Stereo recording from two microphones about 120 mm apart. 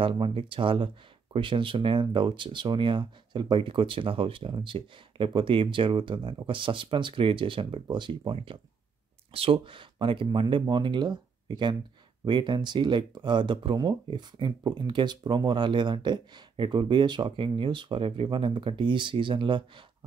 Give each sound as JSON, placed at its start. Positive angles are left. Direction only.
{"t": 0.0, "sound": "speech", "side_deg": -45}